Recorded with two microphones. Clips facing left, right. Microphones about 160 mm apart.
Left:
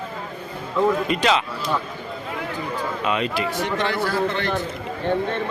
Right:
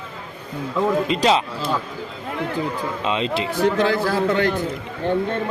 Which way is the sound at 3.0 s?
25° right (ahead or behind).